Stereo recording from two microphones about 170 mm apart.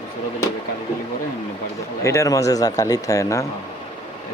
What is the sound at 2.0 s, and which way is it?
Speech, 20° left (ahead or behind).